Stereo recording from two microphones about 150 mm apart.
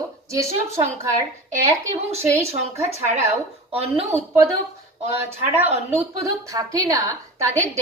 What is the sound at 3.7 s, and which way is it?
Speech, 40° right (ahead or behind).